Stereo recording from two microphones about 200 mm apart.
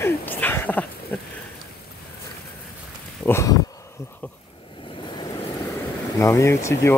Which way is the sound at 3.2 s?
15° left (ahead or behind).